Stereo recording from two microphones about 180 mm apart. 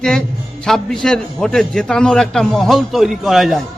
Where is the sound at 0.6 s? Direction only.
5° left (ahead or behind).